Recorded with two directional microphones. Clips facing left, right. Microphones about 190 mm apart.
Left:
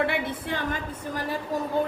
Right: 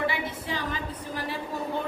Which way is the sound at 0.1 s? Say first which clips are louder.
Left 3 dB; 55° left (ahead or behind).